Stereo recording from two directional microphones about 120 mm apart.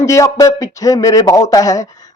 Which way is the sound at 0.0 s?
25° left (ahead or behind).